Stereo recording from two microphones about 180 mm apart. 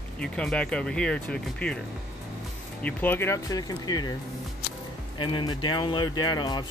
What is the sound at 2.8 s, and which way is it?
Speech, 10° left (ahead or behind).